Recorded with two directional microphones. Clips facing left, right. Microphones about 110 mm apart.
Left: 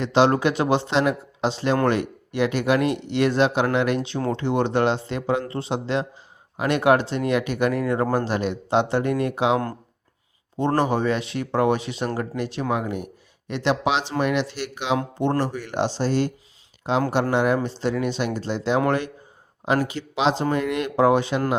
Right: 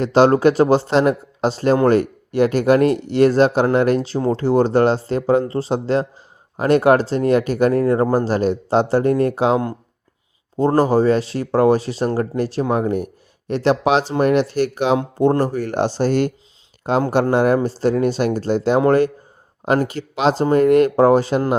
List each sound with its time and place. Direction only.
0.0 s speech: 45° right (ahead or behind)
10.8 s speech: 35° right (ahead or behind)